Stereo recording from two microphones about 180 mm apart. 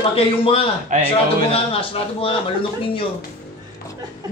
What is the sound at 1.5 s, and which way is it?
Speech, 30° left (ahead or behind).